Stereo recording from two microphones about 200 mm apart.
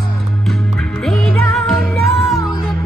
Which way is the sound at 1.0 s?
Centre (ahead or behind).